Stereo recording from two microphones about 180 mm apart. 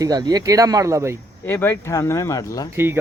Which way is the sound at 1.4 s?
10° left (ahead or behind).